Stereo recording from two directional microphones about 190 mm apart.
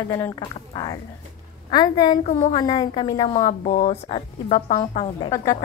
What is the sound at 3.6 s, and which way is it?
Speech, 45° left (ahead or behind).